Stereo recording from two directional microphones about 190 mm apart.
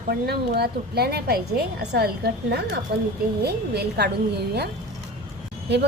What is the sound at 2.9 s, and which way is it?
A woman's voice, 60° right (ahead or behind).